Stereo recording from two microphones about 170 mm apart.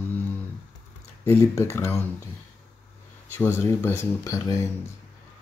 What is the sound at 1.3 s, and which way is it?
Speech, 15° left (ahead or behind).